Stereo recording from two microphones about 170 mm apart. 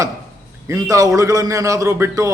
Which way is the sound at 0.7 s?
20° right (ahead or behind).